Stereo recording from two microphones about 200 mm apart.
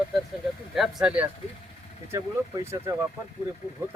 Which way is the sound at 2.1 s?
15° right (ahead or behind).